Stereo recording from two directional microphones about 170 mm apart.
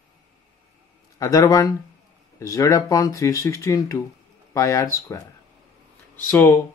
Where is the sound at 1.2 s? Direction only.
20° left (ahead or behind).